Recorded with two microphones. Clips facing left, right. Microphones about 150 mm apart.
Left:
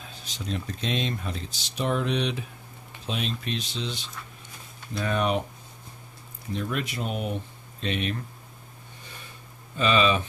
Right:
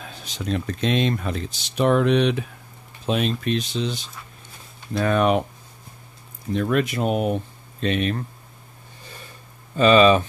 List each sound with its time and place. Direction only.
0.0 s speech: 65° right (ahead or behind); by 4.1 s 45° right (ahead or behind)
4.9 s speech: 60° right (ahead or behind)
6.5 s speech: 60° right (ahead or behind)
9.8 s speech: 50° right (ahead or behind)